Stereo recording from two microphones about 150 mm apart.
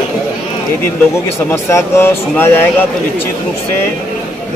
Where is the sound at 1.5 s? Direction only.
20° left (ahead or behind).